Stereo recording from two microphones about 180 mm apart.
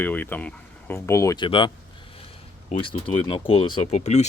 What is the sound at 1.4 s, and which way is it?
Speech, 30° left (ahead or behind).